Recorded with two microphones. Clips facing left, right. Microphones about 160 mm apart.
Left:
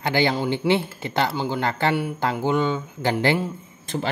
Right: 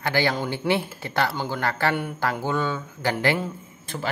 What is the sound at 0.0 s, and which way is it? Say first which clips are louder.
Speech: left 2 dB; 20° left (ahead or behind).